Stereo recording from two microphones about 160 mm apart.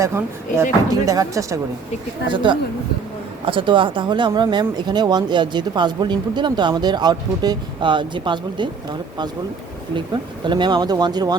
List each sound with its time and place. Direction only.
0.0 s speech: 15° right (ahead or behind)
2.3 s speech: 30° right (ahead or behind)